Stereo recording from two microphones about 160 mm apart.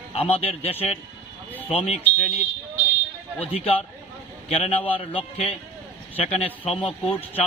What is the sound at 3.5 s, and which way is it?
A man's voice, 35° left (ahead or behind).